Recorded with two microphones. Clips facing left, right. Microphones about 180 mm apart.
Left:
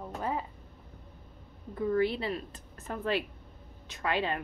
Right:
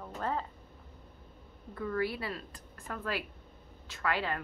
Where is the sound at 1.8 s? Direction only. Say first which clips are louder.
Left 5 dB; 20° left (ahead or behind).